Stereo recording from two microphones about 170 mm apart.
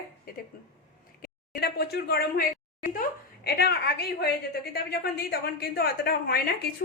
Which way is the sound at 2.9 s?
60° left (ahead or behind).